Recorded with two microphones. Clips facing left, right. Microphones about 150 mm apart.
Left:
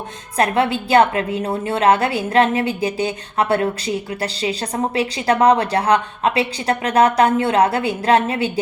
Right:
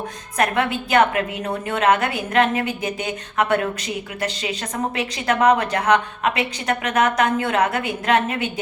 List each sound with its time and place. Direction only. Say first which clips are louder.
0.3 s a woman's voice: left 3 dB; 30° left (ahead or behind)